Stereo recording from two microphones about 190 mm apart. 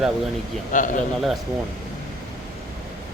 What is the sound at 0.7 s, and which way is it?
Speech, 45° left (ahead or behind).